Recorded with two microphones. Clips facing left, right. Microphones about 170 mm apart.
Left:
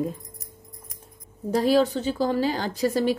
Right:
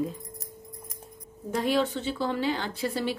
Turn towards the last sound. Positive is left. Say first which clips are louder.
# left 6 dB
turn(degrees=40)  # may be behind; listen again after turning